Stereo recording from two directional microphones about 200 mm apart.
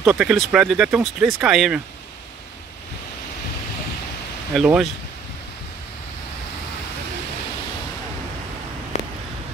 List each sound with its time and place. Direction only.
0.0 s speech: 5° right (ahead or behind)
4.6 s speech: 5° right (ahead or behind)
8.9 s a sound: 35° left (ahead or behind)